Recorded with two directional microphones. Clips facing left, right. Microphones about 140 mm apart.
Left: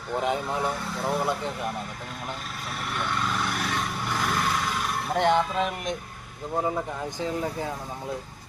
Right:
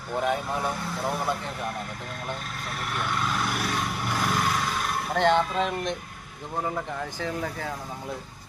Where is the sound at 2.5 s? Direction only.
Centre (ahead or behind).